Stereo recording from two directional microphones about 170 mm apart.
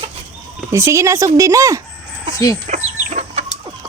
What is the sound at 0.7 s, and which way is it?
Speech, 15° right (ahead or behind).